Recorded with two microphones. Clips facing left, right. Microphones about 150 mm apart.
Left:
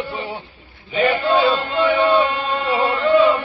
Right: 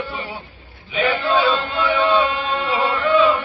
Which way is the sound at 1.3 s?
Centre (ahead or behind).